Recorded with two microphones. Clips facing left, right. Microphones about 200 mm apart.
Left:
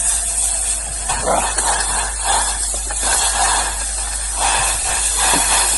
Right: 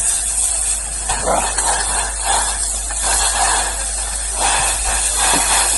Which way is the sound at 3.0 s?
Centre (ahead or behind).